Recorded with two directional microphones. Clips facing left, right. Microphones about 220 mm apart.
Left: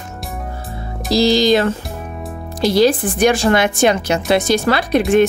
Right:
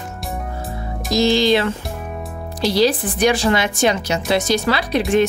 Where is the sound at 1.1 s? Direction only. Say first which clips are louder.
Left 2 dB; 40° left (ahead or behind).